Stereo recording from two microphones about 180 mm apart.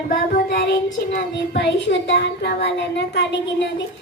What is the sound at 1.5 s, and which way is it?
A woman's voice, 75° left (ahead or behind).